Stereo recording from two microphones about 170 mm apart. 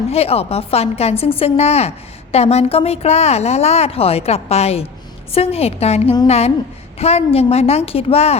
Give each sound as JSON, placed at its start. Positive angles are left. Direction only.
{"t": 0.1, "sound": "a woman's voice", "side_deg": 35}